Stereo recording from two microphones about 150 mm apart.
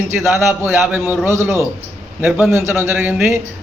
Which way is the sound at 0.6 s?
15° right (ahead or behind).